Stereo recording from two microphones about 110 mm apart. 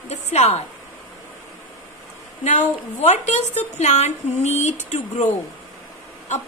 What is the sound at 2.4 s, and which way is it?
A woman's voice, 90° left.